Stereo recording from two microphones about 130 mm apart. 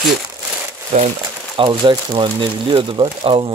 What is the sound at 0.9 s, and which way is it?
Speech, 60° right (ahead or behind).